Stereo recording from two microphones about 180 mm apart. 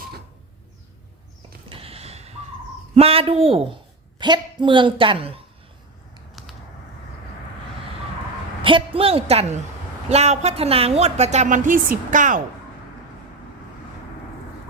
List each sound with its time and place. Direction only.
1.7 s a sound: 30° right (ahead or behind)
2.9 s a woman's voice: 35° right (ahead or behind)
8.6 s speech: 30° right (ahead or behind); by 12.4 s 45° right (ahead or behind)